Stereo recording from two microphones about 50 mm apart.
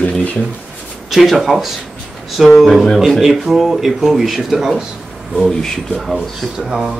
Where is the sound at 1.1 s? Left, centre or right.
Centre.